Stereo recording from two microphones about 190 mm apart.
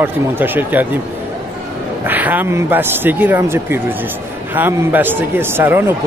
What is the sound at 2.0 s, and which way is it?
Speech, 10° right (ahead or behind).